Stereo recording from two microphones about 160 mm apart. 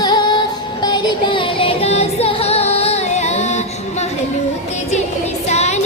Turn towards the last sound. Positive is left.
turn(degrees=45)  # may be behind; listen again after turning